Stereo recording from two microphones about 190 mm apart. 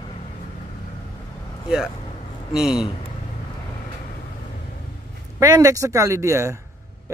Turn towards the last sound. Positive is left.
turn(degrees=-15)  # may be behind; listen again after turning